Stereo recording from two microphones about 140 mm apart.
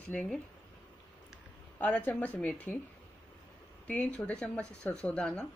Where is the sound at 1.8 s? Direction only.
10° left (ahead or behind).